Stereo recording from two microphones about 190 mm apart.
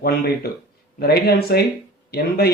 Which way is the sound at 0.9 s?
55° left (ahead or behind).